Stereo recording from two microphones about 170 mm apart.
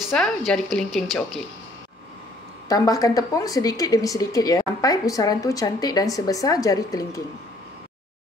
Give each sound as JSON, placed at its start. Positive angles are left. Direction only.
{"t": 0.0, "sound": "speech", "side_deg": 0}
{"t": 2.7, "sound": "a woman's voice", "side_deg": 20}